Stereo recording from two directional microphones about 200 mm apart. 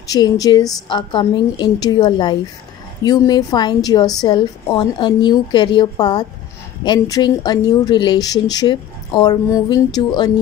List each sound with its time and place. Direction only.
0.1 s a woman's voice: 20° left (ahead or behind)